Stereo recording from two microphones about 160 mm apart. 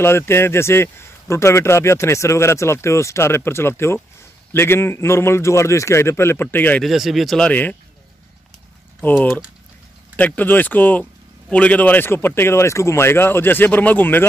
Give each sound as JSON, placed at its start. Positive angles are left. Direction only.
{"t": 0.0, "sound": "a man's voice", "side_deg": 15}
{"t": 6.8, "sound": "speech", "side_deg": 0}
{"t": 9.0, "sound": "a man's voice", "side_deg": 15}